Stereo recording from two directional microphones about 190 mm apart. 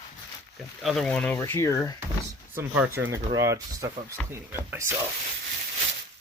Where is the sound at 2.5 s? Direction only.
10° right (ahead or behind).